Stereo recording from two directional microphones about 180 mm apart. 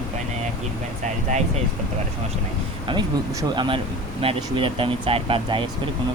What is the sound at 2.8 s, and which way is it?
Speech, 25° right (ahead or behind).